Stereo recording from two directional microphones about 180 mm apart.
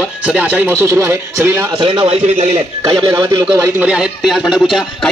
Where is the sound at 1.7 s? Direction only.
30° right (ahead or behind).